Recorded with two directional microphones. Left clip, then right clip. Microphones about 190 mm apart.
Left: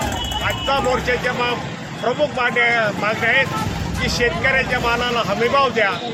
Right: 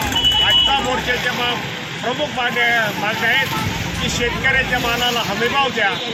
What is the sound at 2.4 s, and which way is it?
A man's voice, 20° left (ahead or behind).